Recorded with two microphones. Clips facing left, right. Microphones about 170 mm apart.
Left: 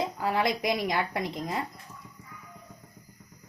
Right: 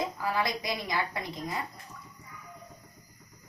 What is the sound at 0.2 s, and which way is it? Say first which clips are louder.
Speech: left 4 dB; 65° left (ahead or behind).